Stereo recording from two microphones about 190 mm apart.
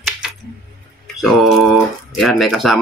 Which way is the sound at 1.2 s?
Centre (ahead or behind).